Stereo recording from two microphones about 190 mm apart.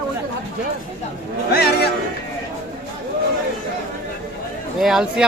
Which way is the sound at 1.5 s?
55° left (ahead or behind).